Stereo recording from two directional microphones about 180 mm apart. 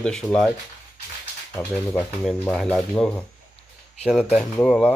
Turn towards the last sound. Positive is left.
turn(degrees=5)  # may be behind; listen again after turning